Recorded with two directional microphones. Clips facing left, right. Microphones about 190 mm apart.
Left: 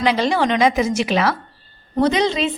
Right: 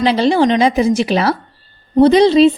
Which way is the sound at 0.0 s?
30° right (ahead or behind).